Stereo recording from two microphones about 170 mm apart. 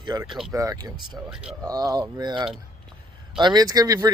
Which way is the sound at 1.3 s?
5° right (ahead or behind).